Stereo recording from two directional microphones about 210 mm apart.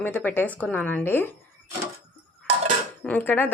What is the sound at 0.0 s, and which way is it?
A woman's voice, 10° left (ahead or behind).